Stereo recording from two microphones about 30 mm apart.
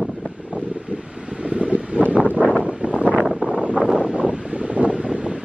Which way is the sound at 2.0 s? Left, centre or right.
Right.